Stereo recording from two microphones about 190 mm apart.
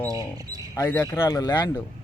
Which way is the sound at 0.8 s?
10° left (ahead or behind).